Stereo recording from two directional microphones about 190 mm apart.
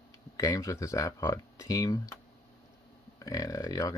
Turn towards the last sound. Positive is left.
turn(degrees=20)  # may be behind; listen again after turning